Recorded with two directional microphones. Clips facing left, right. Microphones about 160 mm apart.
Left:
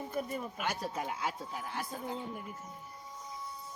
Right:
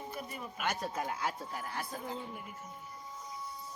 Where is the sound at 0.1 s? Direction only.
45° left (ahead or behind).